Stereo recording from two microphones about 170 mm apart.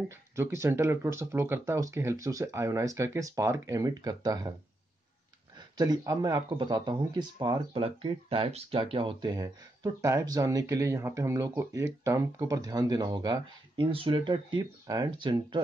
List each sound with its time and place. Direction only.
0.1 s speech: 15° right (ahead or behind)
5.6 s speech: 25° right (ahead or behind)